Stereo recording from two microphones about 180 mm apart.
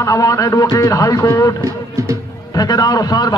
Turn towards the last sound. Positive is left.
turn(degrees=20)  # may be behind; listen again after turning